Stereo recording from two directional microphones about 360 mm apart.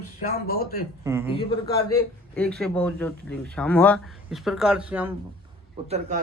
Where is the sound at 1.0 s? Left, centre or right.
Centre.